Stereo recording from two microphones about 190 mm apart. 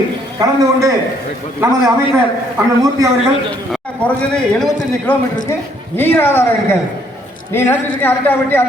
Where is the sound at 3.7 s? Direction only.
5° left (ahead or behind).